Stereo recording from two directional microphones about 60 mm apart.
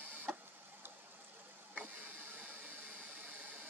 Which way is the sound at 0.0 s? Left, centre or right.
Right.